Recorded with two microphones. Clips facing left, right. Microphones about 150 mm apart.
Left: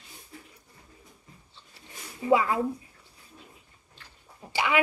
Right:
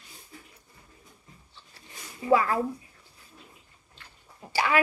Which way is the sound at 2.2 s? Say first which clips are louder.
Even; 20° left (ahead or behind).